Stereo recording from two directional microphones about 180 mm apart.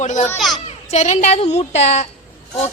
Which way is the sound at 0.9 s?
40° left (ahead or behind).